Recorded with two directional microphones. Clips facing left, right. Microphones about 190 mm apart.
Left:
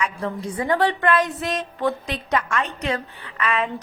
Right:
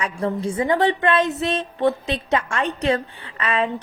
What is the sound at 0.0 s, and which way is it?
A woman's voice, 30° right (ahead or behind).